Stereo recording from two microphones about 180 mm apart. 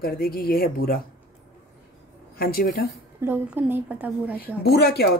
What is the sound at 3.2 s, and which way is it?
A woman's voice, 10° right (ahead or behind).